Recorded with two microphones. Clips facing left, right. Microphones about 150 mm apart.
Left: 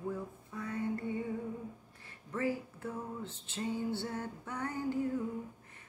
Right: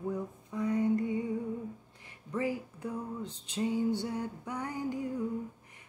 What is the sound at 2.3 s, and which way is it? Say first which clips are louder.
Music: right 2 dB; 15° right (ahead or behind).